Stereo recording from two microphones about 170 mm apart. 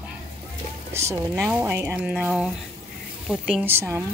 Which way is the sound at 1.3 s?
5° right (ahead or behind).